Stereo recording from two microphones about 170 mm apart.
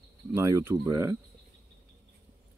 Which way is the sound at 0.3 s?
15° right (ahead or behind).